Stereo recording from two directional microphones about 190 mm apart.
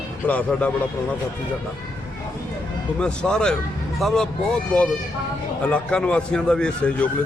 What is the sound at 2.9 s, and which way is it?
A man's voice, 5° left (ahead or behind).